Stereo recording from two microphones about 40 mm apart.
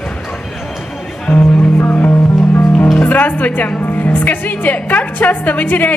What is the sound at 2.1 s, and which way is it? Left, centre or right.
Music, left.